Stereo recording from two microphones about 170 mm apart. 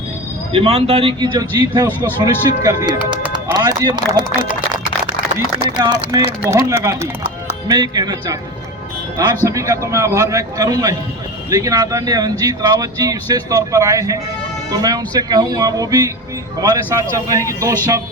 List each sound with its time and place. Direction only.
0.5 s speech: 35° right (ahead or behind)
1.9 s speech: 10° left (ahead or behind)
2.2 s speech: 20° right (ahead or behind)
5.8 s speech: 25° right (ahead or behind)